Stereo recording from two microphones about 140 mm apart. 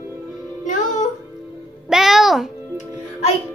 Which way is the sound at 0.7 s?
65° left (ahead or behind).